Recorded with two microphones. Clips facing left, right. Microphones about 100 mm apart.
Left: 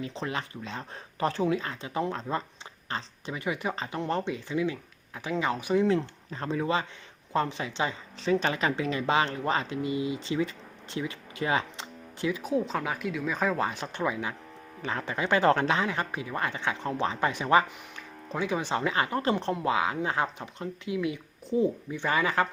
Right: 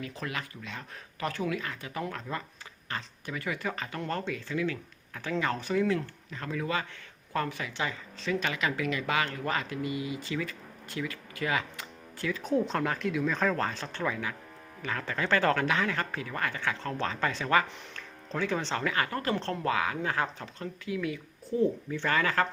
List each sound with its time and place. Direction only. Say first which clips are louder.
0.0 s speech: left 3 dB; 25° left (ahead or behind)
5.8 s speech: left 3 dB; 25° left (ahead or behind)
12.4 s speech: right 5 dB; 5° left (ahead or behind)